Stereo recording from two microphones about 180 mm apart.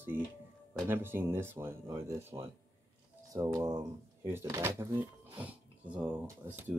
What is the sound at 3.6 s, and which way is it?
Speech, 15° right (ahead or behind).